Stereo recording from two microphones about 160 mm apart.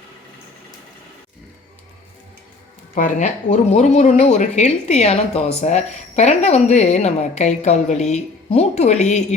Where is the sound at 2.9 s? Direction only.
50° left (ahead or behind).